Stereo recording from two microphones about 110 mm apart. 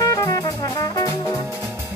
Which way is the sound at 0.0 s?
30° left (ahead or behind).